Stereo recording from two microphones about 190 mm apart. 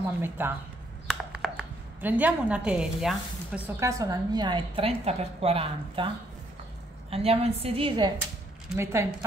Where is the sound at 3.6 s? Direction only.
15° right (ahead or behind).